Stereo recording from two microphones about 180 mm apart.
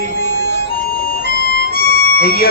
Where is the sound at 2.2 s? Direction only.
55° left (ahead or behind).